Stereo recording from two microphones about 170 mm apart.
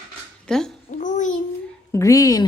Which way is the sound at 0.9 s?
45° left (ahead or behind).